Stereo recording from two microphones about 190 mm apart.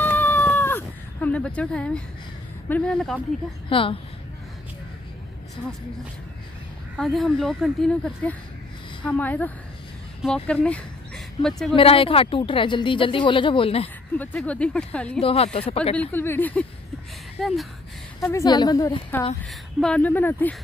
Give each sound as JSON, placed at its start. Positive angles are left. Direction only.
{"t": 0.0, "sound": "cat", "side_deg": 10}
{"t": 2.7, "sound": "a woman's voice", "side_deg": 5}
{"t": 3.6, "sound": "speech", "side_deg": 30}
{"t": 7.0, "sound": "a woman's voice", "side_deg": 0}
{"t": 11.7, "sound": "speech", "side_deg": 30}
{"t": 14.1, "sound": "speech", "side_deg": 10}
{"t": 15.2, "sound": "a woman's voice", "side_deg": 30}
{"t": 16.0, "sound": "a woman's voice", "side_deg": 10}
{"t": 18.2, "sound": "speech", "side_deg": 20}
{"t": 19.8, "sound": "speech", "side_deg": 5}